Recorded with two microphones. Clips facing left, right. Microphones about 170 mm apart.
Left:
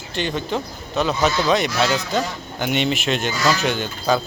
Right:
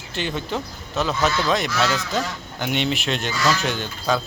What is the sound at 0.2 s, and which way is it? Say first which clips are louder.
Speech: left 3 dB; 5° right (ahead or behind).